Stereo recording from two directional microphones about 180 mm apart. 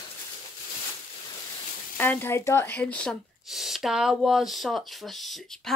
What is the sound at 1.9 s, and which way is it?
Speech, 10° left (ahead or behind).